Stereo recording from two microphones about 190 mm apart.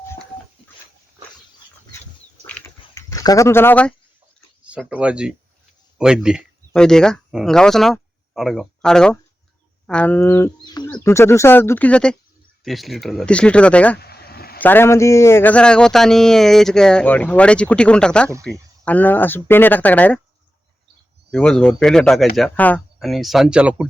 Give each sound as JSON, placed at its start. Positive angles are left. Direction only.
{"t": 2.4, "sound": "dog", "side_deg": 10}
{"t": 4.6, "sound": "a man's voice", "side_deg": -5}
{"t": 14.0, "sound": "a sound", "side_deg": 55}
{"t": 14.6, "sound": "a man's voice", "side_deg": 10}
{"t": 21.2, "sound": "a man's voice", "side_deg": 5}